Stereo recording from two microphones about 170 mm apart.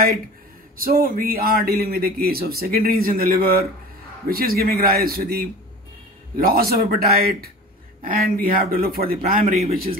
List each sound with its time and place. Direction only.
0.7 s speech: 60° right (ahead or behind)